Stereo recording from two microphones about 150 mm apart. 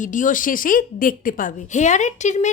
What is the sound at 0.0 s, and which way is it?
A woman's voice, 60° left (ahead or behind).